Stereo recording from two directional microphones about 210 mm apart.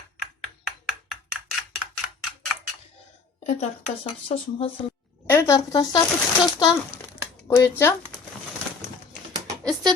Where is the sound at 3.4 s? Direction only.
30° left (ahead or behind).